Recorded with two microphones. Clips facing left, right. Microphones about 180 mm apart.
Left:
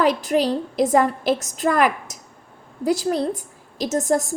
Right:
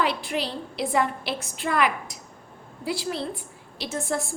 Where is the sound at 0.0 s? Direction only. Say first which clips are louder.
Left 8 dB; 45° left (ahead or behind).